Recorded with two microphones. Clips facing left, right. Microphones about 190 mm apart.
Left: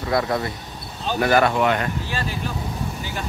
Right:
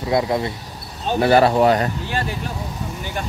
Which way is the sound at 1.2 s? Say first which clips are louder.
Right 4 dB; 30° right (ahead or behind).